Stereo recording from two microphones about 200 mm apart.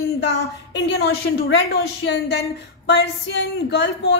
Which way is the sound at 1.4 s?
65° left (ahead or behind).